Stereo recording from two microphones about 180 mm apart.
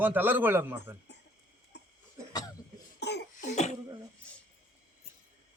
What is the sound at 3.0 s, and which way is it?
Cough, 70° left (ahead or behind).